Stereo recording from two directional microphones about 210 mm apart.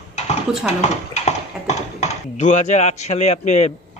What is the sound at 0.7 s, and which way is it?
Speech, 35° left (ahead or behind).